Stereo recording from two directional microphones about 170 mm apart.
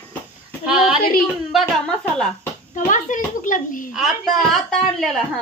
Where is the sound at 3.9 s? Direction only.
Centre (ahead or behind).